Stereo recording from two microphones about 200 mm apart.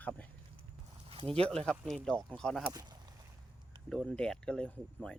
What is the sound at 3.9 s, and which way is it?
Speech, 5° left (ahead or behind).